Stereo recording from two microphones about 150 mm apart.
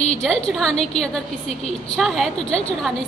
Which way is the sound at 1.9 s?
Centre (ahead or behind).